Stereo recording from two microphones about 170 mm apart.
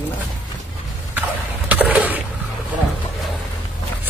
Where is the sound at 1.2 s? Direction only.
10° right (ahead or behind).